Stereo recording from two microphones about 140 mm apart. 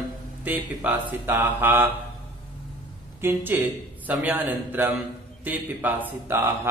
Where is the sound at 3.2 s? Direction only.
15° right (ahead or behind).